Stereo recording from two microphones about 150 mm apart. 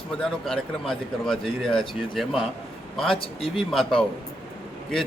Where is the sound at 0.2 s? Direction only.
5° left (ahead or behind).